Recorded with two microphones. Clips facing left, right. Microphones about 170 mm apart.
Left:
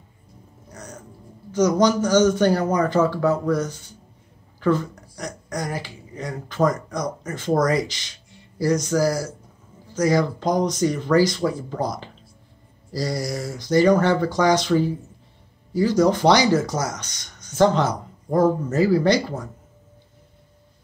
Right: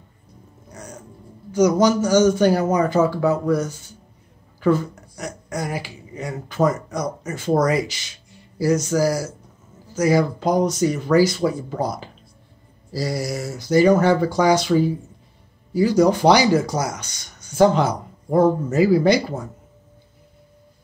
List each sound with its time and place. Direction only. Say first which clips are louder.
0.7 s music: right 1 dB; 10° right (ahead or behind)
1.5 s speech: right 2 dB; 10° right (ahead or behind)